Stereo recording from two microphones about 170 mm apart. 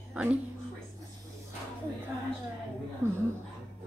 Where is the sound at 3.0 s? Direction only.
15° right (ahead or behind).